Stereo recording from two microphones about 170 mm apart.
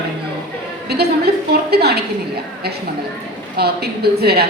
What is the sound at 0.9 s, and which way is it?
A woman's voice, 70° right (ahead or behind).